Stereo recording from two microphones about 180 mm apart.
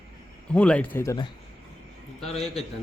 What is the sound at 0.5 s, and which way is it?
Speech, 5° left (ahead or behind).